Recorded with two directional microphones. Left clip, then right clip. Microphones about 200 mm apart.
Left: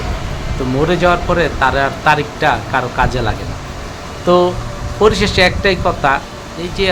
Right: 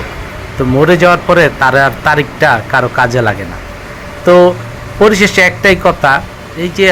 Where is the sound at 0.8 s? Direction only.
25° right (ahead or behind).